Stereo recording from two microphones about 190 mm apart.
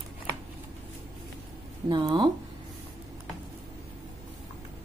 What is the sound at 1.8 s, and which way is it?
Speech, 20° right (ahead or behind).